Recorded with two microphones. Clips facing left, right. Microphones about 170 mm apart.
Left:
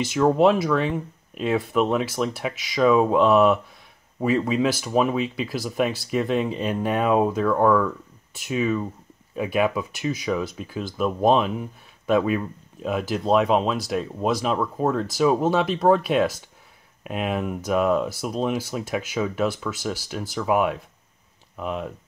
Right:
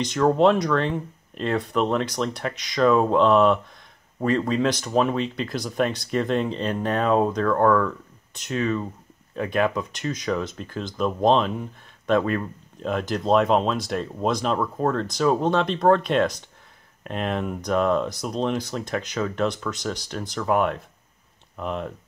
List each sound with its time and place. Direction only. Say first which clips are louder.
0.0 s speech: even; 5° left (ahead or behind)